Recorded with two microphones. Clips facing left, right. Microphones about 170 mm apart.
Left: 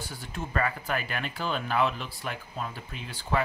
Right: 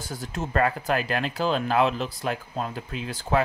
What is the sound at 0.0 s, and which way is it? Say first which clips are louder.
Speech: right 5 dB; 45° right (ahead or behind).